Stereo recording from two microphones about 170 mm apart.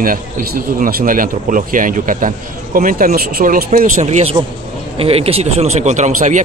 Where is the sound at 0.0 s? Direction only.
55° right (ahead or behind).